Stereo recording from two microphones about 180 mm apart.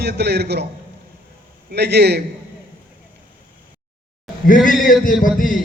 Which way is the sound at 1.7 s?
65° right (ahead or behind).